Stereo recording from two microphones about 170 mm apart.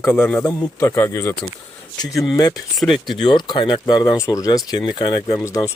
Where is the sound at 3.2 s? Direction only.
25° left (ahead or behind).